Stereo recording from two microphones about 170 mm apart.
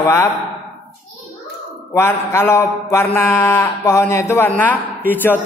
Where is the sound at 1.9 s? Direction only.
15° left (ahead or behind).